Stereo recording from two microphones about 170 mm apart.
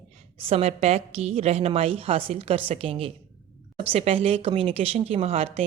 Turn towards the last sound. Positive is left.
turn(degrees=-35)  # may be behind; listen again after turning